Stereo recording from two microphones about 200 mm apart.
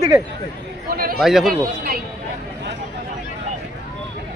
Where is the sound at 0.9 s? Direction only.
50° right (ahead or behind).